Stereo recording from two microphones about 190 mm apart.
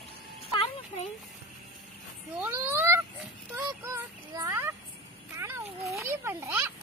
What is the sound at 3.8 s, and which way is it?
Child singing, 15° right (ahead or behind).